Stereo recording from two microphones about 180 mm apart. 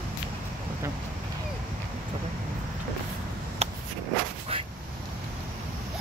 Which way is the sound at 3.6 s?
35° right (ahead or behind).